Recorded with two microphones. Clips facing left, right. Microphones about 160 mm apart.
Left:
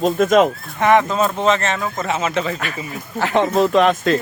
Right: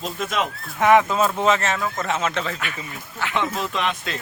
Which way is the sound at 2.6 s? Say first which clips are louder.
Left 5 dB; 40° left (ahead or behind).